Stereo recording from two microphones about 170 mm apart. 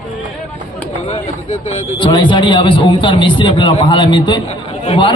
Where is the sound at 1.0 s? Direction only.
40° left (ahead or behind).